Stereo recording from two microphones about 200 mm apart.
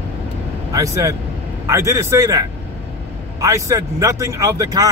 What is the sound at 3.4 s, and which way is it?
Speech, 15° right (ahead or behind).